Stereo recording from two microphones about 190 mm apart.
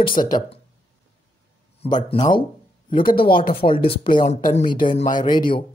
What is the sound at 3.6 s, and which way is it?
Speech, 35° left (ahead or behind).